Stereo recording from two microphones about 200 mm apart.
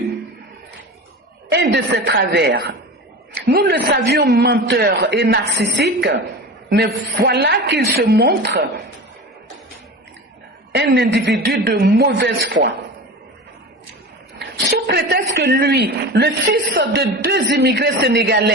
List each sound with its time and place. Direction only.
1.7 s a woman's voice: 60° right (ahead or behind)
10.8 s a woman's voice: 55° right (ahead or behind)
14.3 s a woman's voice: 55° right (ahead or behind)